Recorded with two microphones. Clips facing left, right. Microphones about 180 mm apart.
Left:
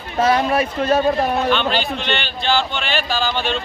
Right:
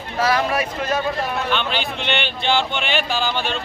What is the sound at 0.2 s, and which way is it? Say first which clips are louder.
Speech: left 3 dB; 25° left (ahead or behind).